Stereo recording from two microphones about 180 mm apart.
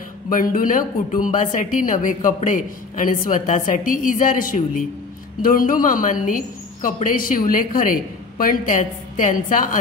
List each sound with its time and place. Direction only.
0.3 s a woman's voice: 50° left (ahead or behind)